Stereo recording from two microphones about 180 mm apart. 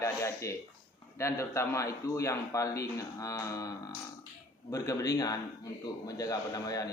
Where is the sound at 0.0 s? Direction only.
15° left (ahead or behind).